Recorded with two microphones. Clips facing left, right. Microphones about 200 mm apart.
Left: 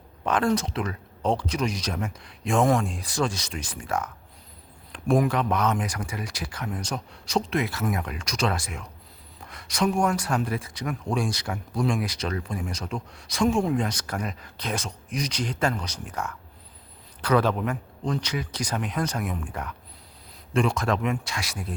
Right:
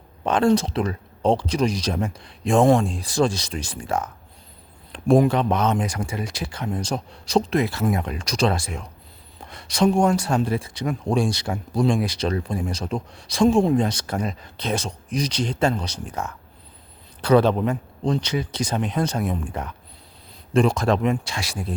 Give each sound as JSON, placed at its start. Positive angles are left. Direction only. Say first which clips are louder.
{"t": 0.3, "sound": "speech", "louder": "right 5 dB", "side_deg": -25}